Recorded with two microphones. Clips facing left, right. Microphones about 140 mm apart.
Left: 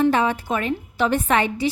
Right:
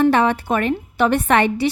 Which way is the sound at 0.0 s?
70° right (ahead or behind).